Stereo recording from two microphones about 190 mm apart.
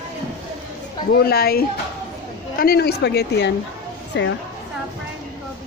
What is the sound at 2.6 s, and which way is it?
A woman's voice, 55° left (ahead or behind).